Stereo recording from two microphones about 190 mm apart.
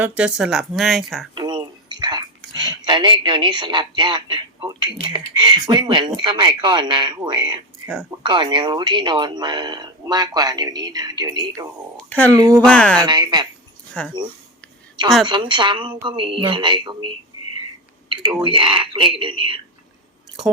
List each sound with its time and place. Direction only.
0.0 s speech: 5° right (ahead or behind)
1.4 s speech: 25° right (ahead or behind)
11.9 s speech: 10° left (ahead or behind)
12.3 s speech: 20° right (ahead or behind)
12.6 s speech: 5° left (ahead or behind)
13.0 s speech: 25° right (ahead or behind)
14.0 s speech: 5° left (ahead or behind)
15.3 s speech: 25° right (ahead or behind)
18.4 s speech: 25° right (ahead or behind)